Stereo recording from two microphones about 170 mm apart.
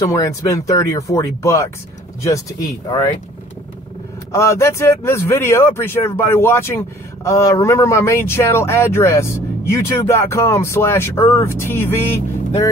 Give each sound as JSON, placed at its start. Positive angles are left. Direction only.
{"t": 0.0, "sound": "a man's voice", "side_deg": 20}
{"t": 4.3, "sound": "a man's voice", "side_deg": 15}